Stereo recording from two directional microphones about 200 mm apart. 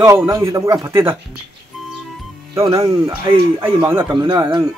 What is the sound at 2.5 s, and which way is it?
Speech, 20° right (ahead or behind).